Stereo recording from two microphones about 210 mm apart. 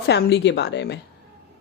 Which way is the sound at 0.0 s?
55° left (ahead or behind).